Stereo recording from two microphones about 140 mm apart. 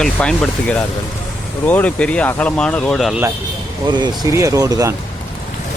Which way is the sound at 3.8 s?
30° right (ahead or behind).